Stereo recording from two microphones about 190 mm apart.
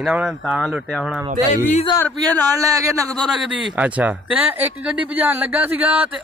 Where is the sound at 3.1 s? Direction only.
Centre (ahead or behind).